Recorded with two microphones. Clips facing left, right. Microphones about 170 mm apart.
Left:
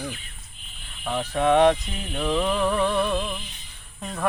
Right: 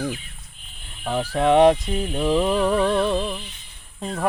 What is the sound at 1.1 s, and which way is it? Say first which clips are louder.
Speech: right 2 dB; 30° right (ahead or behind).